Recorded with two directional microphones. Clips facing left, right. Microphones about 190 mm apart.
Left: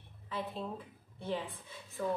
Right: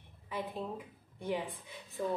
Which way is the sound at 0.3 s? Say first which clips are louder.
Right 1 dB; 15° right (ahead or behind).